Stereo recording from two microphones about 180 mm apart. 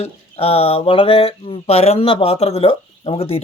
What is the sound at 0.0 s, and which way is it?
Mantra, 35° left (ahead or behind).